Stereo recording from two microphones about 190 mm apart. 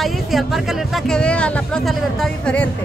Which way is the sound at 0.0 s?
Centre (ahead or behind).